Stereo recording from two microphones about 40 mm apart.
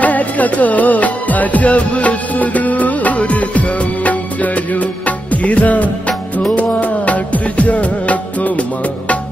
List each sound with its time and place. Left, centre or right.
0.0 s music: left